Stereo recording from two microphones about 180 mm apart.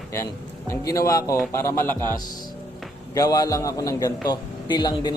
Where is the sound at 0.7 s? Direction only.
15° left (ahead or behind).